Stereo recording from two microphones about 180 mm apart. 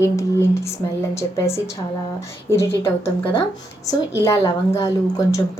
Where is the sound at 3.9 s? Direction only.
15° left (ahead or behind).